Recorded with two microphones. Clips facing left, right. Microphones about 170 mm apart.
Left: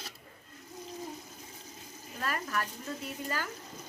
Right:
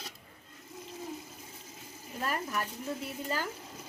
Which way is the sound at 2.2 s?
15° right (ahead or behind).